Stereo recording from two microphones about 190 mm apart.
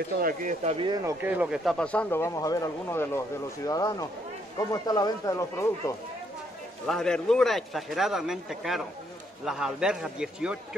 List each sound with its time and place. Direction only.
0.2 s speech: 45° right (ahead or behind)
0.7 s speech: 25° right (ahead or behind)
1.2 s speech: 5° right (ahead or behind); by 5.9 s 15° left (ahead or behind)
6.9 s a man's voice: 5° left (ahead or behind)